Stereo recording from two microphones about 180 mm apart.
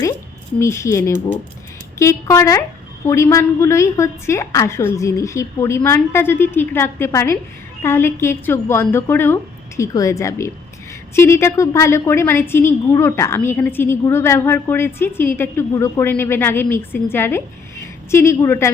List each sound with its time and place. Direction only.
0.6 s a woman's voice: 15° left (ahead or behind)